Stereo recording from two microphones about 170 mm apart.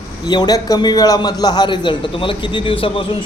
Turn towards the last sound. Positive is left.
turn(degrees=30)  # may be behind; listen again after turning